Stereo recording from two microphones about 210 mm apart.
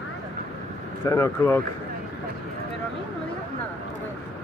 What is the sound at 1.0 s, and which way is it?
Speech, 15° left (ahead or behind).